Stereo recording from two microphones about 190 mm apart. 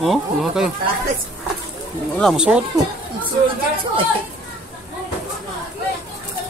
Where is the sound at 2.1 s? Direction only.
Centre (ahead or behind).